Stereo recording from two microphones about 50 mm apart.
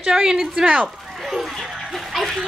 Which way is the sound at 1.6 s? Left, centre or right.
Centre.